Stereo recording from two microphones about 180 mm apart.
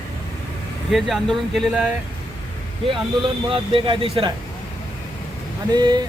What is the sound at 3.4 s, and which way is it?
Speech, 30° right (ahead or behind).